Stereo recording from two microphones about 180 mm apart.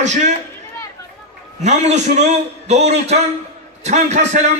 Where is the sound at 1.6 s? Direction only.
40° right (ahead or behind).